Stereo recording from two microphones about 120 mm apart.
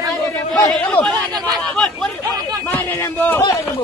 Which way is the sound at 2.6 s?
15° left (ahead or behind).